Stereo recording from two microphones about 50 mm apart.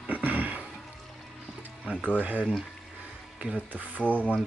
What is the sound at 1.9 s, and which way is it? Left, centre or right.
Speech, left.